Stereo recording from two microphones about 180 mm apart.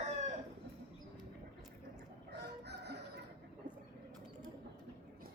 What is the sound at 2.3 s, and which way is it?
Crowing, 70° right (ahead or behind).